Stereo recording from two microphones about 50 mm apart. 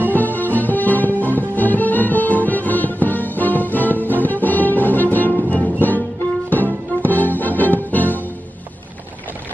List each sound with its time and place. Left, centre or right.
0.1 s music: left